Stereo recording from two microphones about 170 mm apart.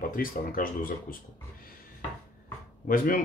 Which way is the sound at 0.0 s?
55° left (ahead or behind).